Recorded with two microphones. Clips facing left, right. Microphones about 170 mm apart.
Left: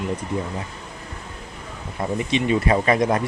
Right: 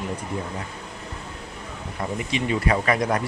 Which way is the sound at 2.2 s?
25° left (ahead or behind).